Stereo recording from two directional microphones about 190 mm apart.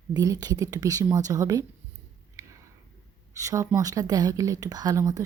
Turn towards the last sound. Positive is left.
turn(degrees=-20)  # may be behind; listen again after turning